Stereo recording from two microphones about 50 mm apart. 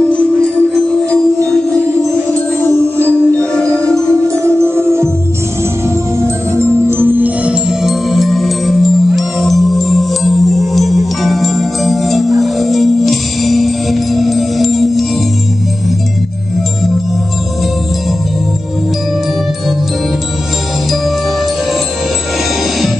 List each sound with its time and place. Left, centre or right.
0.4 s music: centre
3.5 s music: centre
4.4 s music: right
6.2 s music: right
6.9 s music: right
7.4 s music: centre